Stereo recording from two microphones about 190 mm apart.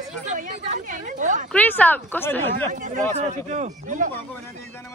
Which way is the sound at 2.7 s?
40° right (ahead or behind).